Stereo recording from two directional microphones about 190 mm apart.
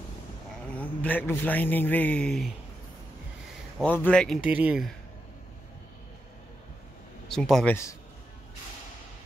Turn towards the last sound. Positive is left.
turn(degrees=0)  # may be behind; listen again after turning